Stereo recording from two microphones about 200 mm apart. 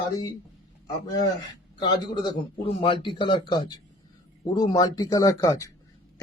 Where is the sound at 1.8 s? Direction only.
25° left (ahead or behind).